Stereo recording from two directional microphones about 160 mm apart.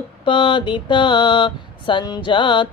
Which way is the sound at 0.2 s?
30° left (ahead or behind).